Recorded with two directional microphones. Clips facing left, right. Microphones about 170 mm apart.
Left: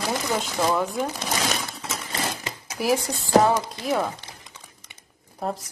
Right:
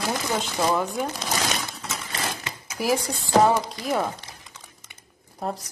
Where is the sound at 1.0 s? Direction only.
5° left (ahead or behind).